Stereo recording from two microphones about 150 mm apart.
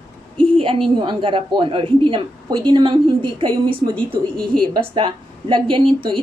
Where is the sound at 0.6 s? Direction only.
35° right (ahead or behind).